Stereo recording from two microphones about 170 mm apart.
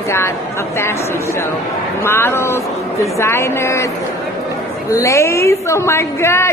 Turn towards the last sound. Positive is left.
turn(degrees=15)  # may be behind; listen again after turning